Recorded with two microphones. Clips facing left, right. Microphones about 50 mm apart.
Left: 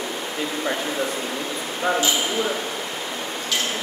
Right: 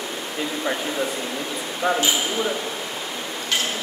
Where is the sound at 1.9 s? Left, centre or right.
Centre.